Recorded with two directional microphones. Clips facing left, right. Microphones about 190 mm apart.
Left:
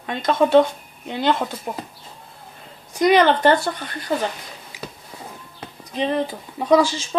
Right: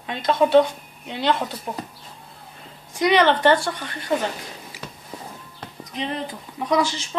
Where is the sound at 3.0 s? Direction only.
45° left (ahead or behind).